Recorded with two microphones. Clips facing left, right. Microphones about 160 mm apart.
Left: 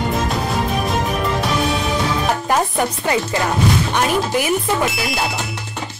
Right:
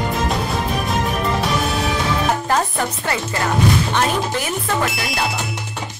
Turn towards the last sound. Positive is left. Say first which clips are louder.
# left 1 dB
turn(degrees=0)  # may be behind; listen again after turning